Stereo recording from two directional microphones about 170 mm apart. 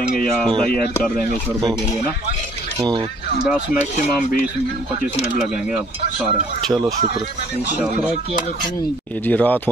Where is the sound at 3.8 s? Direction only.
50° left (ahead or behind).